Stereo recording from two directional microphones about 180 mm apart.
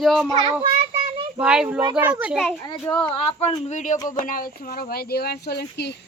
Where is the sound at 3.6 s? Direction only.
40° left (ahead or behind); by 5.9 s 65° left (ahead or behind).